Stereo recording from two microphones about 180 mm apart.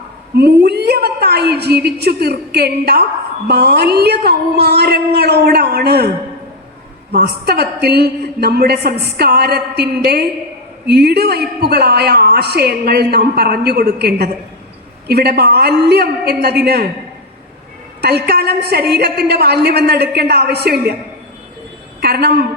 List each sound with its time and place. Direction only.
0.3 s a woman's voice: 65° right (ahead or behind)
7.1 s a woman's voice: 60° right (ahead or behind)
18.0 s a woman's voice: 65° right (ahead or behind)
22.0 s a woman's voice: 65° right (ahead or behind)